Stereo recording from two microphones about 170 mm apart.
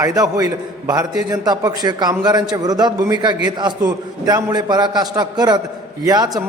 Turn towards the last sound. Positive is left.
turn(degrees=-25)  # may be behind; listen again after turning